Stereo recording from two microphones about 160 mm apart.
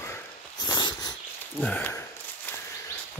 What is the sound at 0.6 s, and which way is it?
Dog, 25° left (ahead or behind).